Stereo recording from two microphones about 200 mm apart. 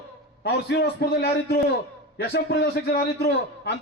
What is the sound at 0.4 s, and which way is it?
A man's voice, 55° left (ahead or behind).